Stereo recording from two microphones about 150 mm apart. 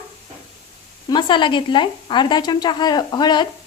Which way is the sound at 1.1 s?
30° left (ahead or behind).